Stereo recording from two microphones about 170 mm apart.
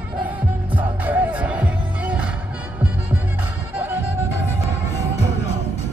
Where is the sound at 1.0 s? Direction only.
10° right (ahead or behind).